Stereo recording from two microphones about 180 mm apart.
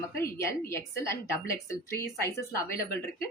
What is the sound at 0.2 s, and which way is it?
A woman's voice, 15° left (ahead or behind).